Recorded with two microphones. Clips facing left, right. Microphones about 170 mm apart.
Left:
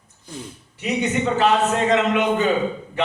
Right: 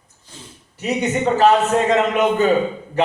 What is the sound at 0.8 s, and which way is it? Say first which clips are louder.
Speech: right 2 dB; 40° right (ahead or behind).